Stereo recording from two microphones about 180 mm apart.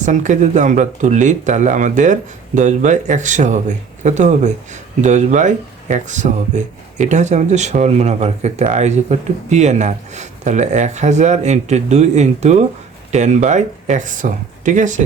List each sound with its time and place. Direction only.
0.0 s speech: 45° right (ahead or behind)